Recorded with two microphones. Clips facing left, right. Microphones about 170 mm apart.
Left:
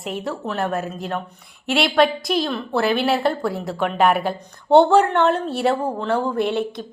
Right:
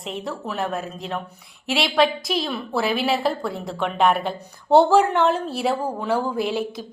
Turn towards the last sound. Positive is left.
turn(degrees=0)  # may be behind; listen again after turning